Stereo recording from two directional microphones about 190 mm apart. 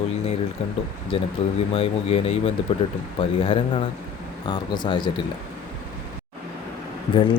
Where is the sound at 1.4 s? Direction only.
30° left (ahead or behind).